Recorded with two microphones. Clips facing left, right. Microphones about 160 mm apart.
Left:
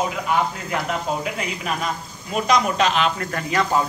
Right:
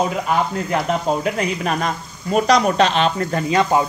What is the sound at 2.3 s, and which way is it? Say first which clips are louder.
Speech: right 5 dB; 40° right (ahead or behind).